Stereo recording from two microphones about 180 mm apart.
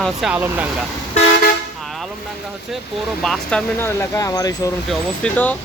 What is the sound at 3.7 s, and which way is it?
Speech, 15° left (ahead or behind).